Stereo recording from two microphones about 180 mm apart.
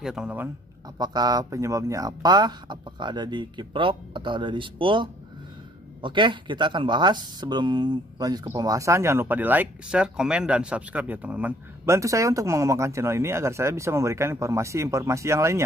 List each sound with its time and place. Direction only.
0.0 s speech: 5° right (ahead or behind)
0.9 s speech: 20° right (ahead or behind)